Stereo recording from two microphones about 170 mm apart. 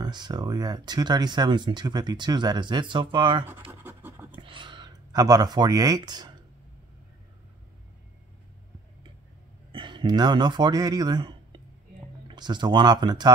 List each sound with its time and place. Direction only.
0.0 s speech: 25° right (ahead or behind)
3.8 s scratch: 10° right (ahead or behind)
4.4 s a sound: 30° right (ahead or behind)
9.7 s speech: 30° right (ahead or behind)